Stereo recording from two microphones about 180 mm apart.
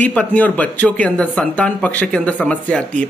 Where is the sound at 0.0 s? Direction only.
10° left (ahead or behind).